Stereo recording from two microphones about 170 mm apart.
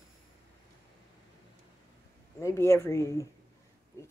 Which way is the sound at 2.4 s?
15° left (ahead or behind).